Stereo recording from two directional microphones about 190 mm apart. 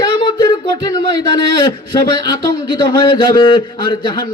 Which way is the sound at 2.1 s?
25° left (ahead or behind).